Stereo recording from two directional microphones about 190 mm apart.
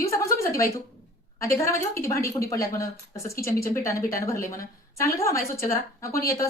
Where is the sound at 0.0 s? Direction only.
15° left (ahead or behind).